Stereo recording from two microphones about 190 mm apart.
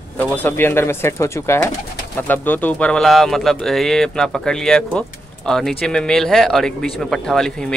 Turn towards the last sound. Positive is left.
turn(degrees=5)  # may be behind; listen again after turning